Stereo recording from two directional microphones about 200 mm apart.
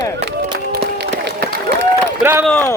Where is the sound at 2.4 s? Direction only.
5° left (ahead or behind).